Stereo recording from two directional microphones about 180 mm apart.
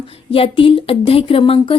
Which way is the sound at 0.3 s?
30° left (ahead or behind).